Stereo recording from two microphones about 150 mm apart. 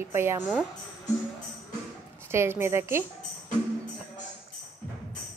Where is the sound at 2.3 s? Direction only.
15° right (ahead or behind).